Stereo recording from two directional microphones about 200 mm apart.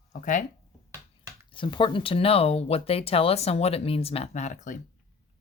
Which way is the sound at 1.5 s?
25° left (ahead or behind).